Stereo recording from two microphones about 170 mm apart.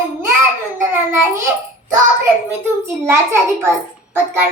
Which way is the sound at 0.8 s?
15° right (ahead or behind).